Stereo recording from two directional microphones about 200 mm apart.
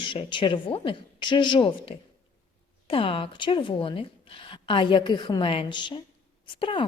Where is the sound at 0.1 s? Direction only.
25° left (ahead or behind).